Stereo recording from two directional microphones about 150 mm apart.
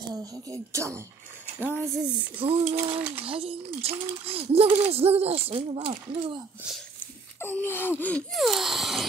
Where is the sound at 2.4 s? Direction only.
40° right (ahead or behind).